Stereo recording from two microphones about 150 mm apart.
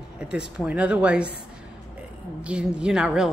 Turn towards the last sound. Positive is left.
turn(degrees=-5)  # may be behind; listen again after turning